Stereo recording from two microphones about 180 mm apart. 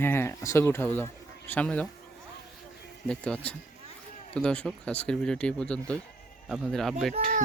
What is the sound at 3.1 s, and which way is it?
Speech, 5° left (ahead or behind).